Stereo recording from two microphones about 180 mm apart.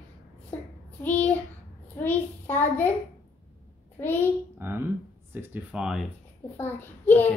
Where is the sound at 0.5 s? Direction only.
10° left (ahead or behind).